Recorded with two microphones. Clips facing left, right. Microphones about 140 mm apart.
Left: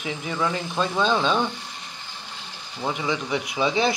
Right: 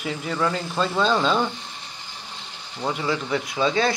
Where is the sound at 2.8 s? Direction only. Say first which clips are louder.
Right 1 dB; centre (ahead or behind).